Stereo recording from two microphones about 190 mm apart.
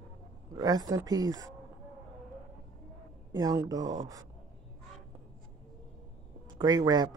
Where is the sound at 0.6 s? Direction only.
20° right (ahead or behind).